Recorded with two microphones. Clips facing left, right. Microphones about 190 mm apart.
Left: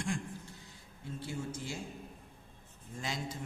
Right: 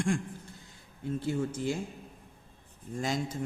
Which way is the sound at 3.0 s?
45° right (ahead or behind).